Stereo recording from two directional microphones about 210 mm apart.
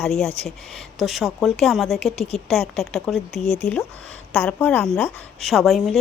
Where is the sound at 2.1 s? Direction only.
30° left (ahead or behind).